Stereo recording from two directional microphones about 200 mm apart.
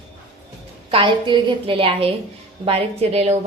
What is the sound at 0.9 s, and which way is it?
A woman's voice, 25° right (ahead or behind).